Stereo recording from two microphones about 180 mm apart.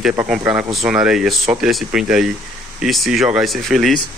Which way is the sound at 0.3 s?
10° right (ahead or behind).